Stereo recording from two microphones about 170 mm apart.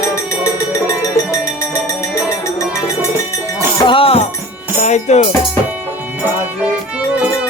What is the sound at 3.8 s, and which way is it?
Music, 30° left (ahead or behind).